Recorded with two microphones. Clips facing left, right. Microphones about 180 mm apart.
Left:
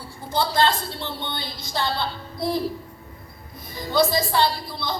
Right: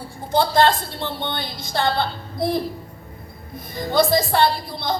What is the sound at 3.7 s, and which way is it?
A woman's voice, 55° right (ahead or behind).